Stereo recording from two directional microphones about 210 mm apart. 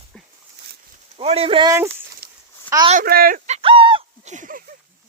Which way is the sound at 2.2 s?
50° right (ahead or behind).